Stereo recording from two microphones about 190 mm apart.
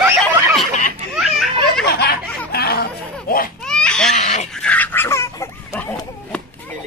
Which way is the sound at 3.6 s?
5° left (ahead or behind).